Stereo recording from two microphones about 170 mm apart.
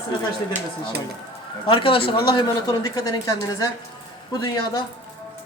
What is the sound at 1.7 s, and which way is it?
Speech, 30° left (ahead or behind).